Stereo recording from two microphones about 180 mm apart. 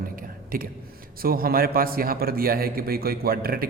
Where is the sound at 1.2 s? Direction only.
55° right (ahead or behind).